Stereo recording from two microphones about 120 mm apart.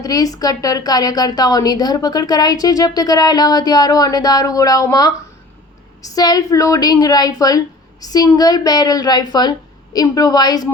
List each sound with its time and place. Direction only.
0.0 s a woman's voice: 30° left (ahead or behind)